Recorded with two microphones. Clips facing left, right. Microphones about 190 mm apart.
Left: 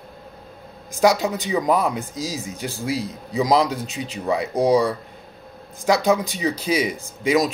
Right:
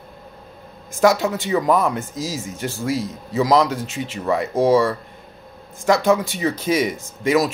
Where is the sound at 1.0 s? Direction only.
15° left (ahead or behind).